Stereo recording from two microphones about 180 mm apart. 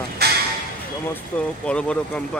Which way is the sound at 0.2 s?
60° right (ahead or behind).